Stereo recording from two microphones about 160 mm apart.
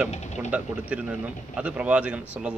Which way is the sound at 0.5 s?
10° right (ahead or behind).